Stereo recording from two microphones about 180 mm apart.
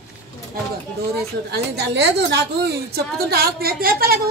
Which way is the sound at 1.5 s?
70° right (ahead or behind).